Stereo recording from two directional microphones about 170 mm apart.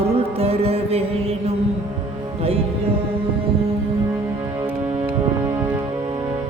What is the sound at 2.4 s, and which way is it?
Music, 35° right (ahead or behind).